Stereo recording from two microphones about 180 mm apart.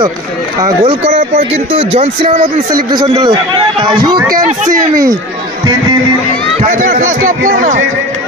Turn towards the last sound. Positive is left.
turn(degrees=-45)  # may be behind; listen again after turning